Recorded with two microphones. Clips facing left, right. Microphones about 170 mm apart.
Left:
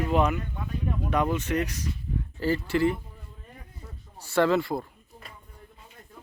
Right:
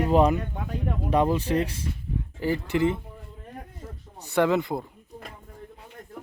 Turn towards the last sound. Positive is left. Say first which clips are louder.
# even
turn(degrees=-20)  # may be behind; listen again after turning